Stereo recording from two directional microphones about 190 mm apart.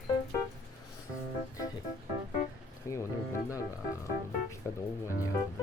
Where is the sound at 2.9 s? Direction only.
15° left (ahead or behind).